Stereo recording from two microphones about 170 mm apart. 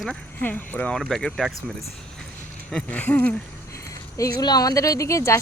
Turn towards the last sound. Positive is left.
turn(degrees=15)  # may be behind; listen again after turning